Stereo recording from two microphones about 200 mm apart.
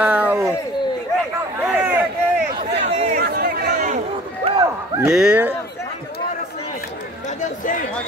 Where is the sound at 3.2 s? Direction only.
55° right (ahead or behind).